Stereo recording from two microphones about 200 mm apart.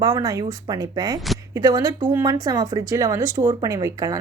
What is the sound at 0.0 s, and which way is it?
Speech, 15° right (ahead or behind).